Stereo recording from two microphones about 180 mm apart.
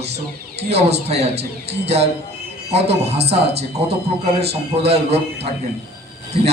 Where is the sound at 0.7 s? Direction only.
35° right (ahead or behind).